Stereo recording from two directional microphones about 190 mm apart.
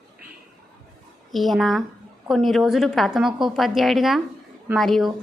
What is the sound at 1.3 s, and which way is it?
A woman's voice, centre (ahead or behind).